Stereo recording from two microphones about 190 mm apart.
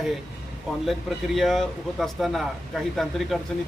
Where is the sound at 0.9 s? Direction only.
Centre (ahead or behind).